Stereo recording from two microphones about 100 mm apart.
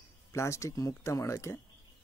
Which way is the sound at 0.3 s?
30° left (ahead or behind).